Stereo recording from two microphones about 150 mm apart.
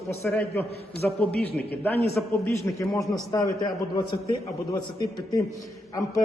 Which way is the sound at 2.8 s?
20° left (ahead or behind).